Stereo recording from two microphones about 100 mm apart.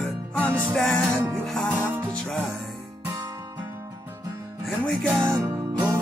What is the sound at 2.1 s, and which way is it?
Music, 10° left (ahead or behind).